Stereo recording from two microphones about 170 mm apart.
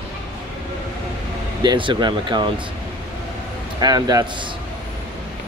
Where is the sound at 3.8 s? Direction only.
25° right (ahead or behind).